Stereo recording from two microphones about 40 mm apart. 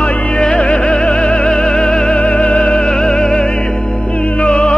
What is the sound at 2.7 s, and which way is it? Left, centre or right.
Music, centre.